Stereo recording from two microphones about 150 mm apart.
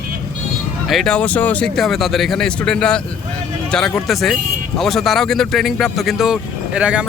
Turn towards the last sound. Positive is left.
turn(degrees=-5)  # may be behind; listen again after turning